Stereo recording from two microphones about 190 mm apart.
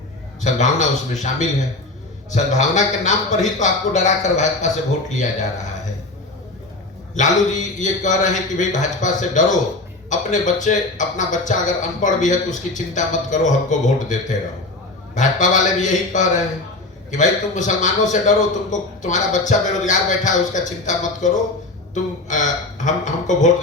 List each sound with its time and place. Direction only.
0.4 s a man's voice: 40° left (ahead or behind)
7.1 s a man's voice: 40° left (ahead or behind)